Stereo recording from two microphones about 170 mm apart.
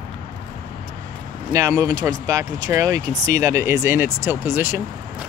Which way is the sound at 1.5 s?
20° right (ahead or behind).